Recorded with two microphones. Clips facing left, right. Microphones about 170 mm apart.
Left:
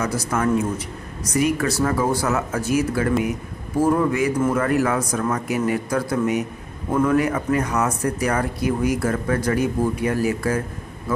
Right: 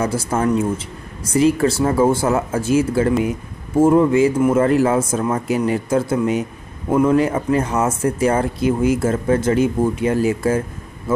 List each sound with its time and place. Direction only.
0.0 s speech: 30° right (ahead or behind)